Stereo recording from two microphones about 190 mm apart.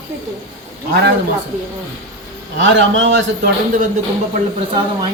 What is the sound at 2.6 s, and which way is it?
Speech, 75° right (ahead or behind).